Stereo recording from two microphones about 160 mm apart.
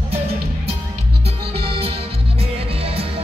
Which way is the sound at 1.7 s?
35° right (ahead or behind).